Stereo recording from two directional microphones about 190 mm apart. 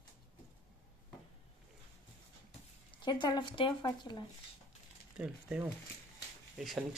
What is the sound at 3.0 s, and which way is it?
Speech, 25° left (ahead or behind).